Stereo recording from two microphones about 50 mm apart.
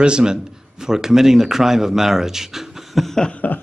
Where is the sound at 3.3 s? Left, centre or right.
Left.